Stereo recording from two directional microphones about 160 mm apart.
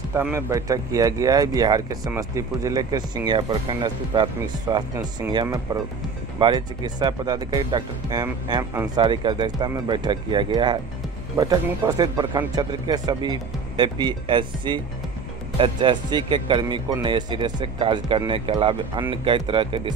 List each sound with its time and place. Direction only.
0.1 s speech: 15° right (ahead or behind); by 19.9 s 35° right (ahead or behind)